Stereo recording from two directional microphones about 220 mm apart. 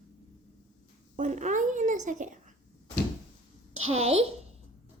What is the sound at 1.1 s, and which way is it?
A woman's voice, 30° right (ahead or behind).